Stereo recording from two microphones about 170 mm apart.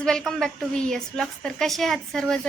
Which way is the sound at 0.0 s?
5° left (ahead or behind).